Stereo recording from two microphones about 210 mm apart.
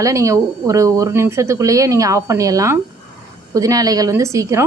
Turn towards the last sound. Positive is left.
turn(degrees=-15)  # may be behind; listen again after turning